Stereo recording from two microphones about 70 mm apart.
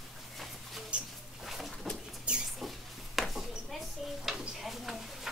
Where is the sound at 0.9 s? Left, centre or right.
Centre.